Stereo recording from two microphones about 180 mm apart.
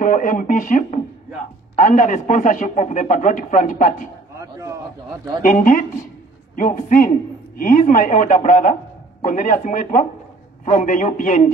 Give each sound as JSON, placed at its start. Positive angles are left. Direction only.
{"t": 0.0, "sound": "a man's voice", "side_deg": 50}
{"t": 4.4, "sound": "a sound", "side_deg": -15}
{"t": 5.4, "sound": "a man's voice", "side_deg": 45}